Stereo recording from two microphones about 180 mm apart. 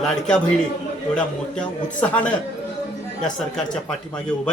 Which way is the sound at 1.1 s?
5° left (ahead or behind).